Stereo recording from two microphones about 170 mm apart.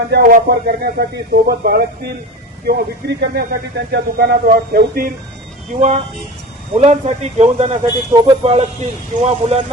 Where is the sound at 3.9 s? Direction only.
65° right (ahead or behind).